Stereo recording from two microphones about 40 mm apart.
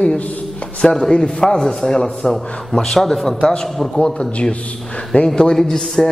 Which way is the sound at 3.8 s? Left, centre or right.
Centre.